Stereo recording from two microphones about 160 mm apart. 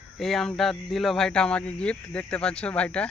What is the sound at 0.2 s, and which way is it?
Speech, centre (ahead or behind).